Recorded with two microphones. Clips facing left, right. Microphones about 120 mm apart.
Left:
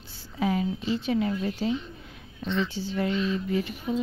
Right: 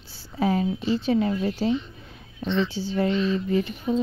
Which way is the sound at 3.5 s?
35° right (ahead or behind).